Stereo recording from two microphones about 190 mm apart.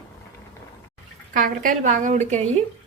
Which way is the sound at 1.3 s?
45° right (ahead or behind).